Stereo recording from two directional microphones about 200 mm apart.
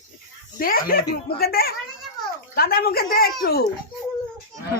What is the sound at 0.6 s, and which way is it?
Speech, 45° left (ahead or behind).